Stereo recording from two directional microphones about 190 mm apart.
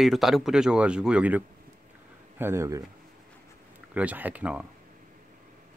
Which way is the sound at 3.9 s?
10° right (ahead or behind).